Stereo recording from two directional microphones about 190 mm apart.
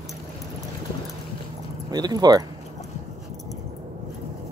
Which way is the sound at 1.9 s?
20° right (ahead or behind).